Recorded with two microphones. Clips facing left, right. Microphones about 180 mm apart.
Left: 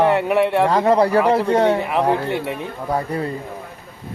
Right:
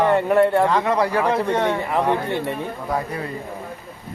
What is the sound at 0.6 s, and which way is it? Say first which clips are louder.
A man's voice: left 4 dB; 35° left (ahead or behind).